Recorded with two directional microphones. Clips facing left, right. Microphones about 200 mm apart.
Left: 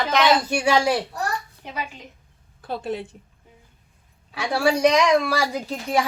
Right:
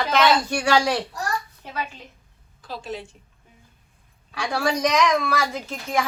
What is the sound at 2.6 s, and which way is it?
Speech, 60° left (ahead or behind).